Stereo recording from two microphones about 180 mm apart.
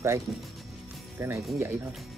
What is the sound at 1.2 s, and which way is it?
Speech, 15° right (ahead or behind).